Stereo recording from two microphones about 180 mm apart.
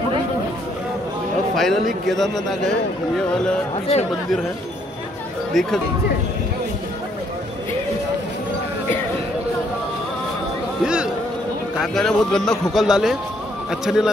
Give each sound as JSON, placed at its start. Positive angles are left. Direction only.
{"t": 1.5, "sound": "a man's voice", "side_deg": 0}
{"t": 5.5, "sound": "speech", "side_deg": 0}
{"t": 10.8, "sound": "a sound", "side_deg": -5}
{"t": 11.8, "sound": "a man's voice", "side_deg": 0}